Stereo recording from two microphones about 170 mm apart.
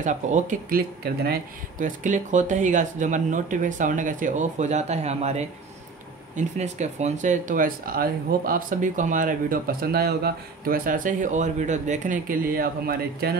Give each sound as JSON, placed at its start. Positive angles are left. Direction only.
{"t": 0.0, "sound": "speech", "side_deg": -45}
{"t": 2.0, "sound": "speech", "side_deg": -45}